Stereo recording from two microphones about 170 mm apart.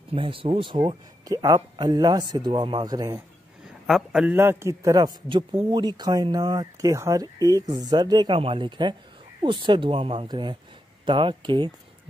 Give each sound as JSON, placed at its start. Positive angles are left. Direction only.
{"t": 0.1, "sound": "speech", "side_deg": -30}
{"t": 3.8, "sound": "a man's voice", "side_deg": -5}